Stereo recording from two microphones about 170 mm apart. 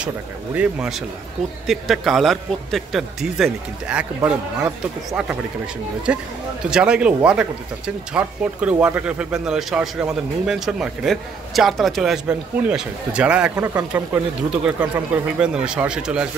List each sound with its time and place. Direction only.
0.6 s speech: 5° right (ahead or behind)